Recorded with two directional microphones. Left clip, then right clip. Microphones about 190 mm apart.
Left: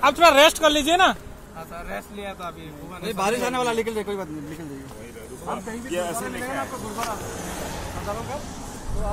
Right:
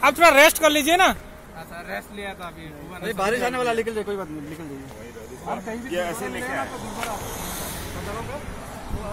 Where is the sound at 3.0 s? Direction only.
45° left (ahead or behind).